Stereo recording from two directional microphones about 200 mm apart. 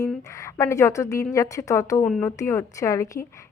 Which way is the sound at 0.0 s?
15° left (ahead or behind).